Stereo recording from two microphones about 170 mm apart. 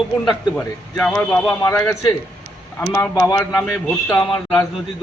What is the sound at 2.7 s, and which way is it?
A man's voice, 15° left (ahead or behind).